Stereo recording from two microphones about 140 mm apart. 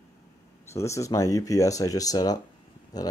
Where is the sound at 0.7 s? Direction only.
20° left (ahead or behind).